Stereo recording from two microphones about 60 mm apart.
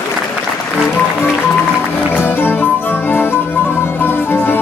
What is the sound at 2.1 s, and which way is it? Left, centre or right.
Music, left.